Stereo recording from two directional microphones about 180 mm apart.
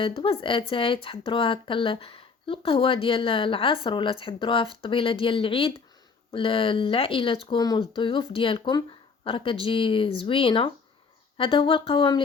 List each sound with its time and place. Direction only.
0.0 s speech: 30° left (ahead or behind)